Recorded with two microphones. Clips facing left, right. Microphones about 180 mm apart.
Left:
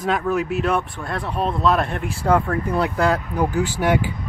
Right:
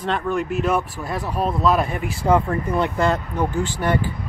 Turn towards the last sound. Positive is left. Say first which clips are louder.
# left 2 dB
turn(degrees=10)  # may be behind; listen again after turning